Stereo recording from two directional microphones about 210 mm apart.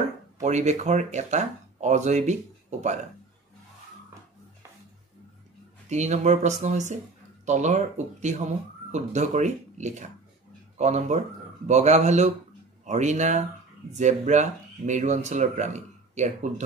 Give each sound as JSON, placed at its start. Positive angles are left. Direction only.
{"t": 0.4, "sound": "speech", "side_deg": -35}
{"t": 5.9, "sound": "a man's voice", "side_deg": -35}